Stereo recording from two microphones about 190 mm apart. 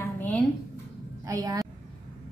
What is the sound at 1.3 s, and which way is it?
Speech, 20° right (ahead or behind).